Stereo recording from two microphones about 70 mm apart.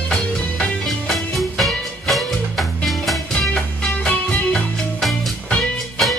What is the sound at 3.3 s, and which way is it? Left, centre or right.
Music, centre.